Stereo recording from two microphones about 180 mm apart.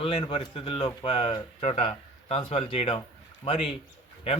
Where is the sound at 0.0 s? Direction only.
30° left (ahead or behind).